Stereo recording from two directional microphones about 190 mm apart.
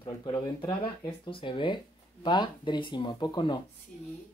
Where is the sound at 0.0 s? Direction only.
25° left (ahead or behind).